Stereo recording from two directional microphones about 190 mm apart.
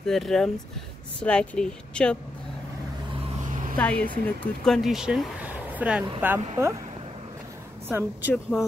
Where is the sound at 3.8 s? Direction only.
5° left (ahead or behind); by 6.4 s 10° right (ahead or behind).